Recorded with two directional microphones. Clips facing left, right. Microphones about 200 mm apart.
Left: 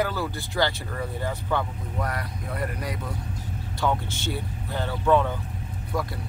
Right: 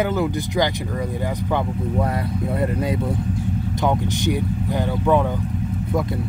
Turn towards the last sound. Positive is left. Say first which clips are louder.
# right 3 dB
turn(degrees=-15)  # may be behind; listen again after turning